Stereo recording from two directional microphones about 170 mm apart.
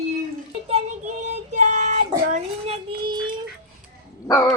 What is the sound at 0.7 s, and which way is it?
Child singing, 45° right (ahead or behind).